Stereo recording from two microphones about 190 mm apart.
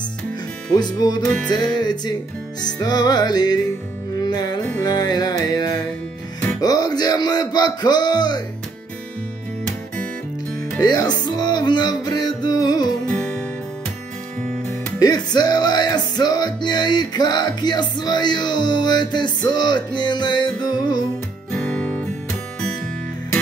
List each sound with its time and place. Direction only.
0.7 s music: 20° left (ahead or behind)
1.2 s music: 5° left (ahead or behind)
1.5 s music: 20° left (ahead or behind)
10.8 s music: 20° left (ahead or behind)
15.0 s music: 20° left (ahead or behind)
21.5 s guitar: 5° left (ahead or behind)